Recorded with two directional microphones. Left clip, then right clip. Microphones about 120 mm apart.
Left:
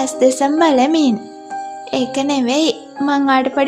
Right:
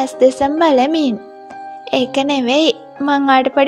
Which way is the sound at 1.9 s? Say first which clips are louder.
Right 3 dB; 55° right (ahead or behind).